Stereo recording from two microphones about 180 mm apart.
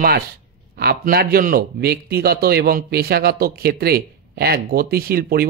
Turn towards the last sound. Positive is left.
turn(degrees=-60)  # may be behind; listen again after turning